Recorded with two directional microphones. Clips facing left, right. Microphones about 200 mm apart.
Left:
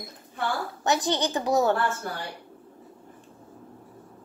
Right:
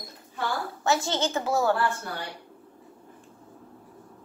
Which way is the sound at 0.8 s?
15° left (ahead or behind).